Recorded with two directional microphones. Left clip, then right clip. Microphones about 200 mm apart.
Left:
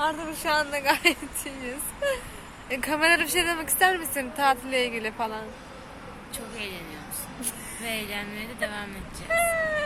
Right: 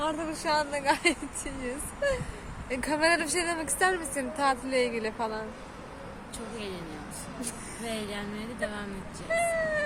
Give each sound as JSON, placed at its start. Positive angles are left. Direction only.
{"t": 0.0, "sound": "speech", "side_deg": 5}
{"t": 7.9, "sound": "a woman's voice", "side_deg": -15}
{"t": 9.3, "sound": "speech", "side_deg": 10}